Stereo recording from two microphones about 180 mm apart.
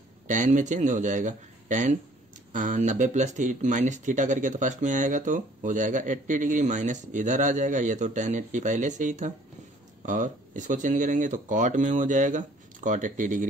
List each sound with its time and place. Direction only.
0.3 s speech: 45° right (ahead or behind)